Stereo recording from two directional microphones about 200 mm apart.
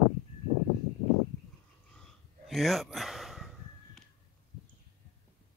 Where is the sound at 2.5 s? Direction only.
Centre (ahead or behind).